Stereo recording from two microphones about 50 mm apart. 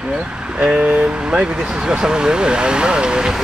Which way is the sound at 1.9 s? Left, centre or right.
Centre.